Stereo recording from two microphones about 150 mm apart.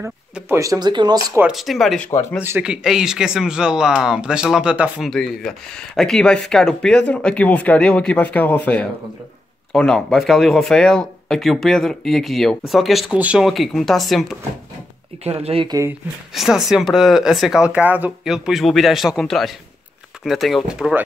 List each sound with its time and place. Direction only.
0.0 s speech: 15° right (ahead or behind)
1.5 s speech: centre (ahead or behind)
2.0 s speech: 20° left (ahead or behind)
2.4 s speech: 10° right (ahead or behind)
5.1 s speech: 5° left (ahead or behind)
15.2 s speech: 40° right (ahead or behind)
16.3 s speech: 5° right (ahead or behind)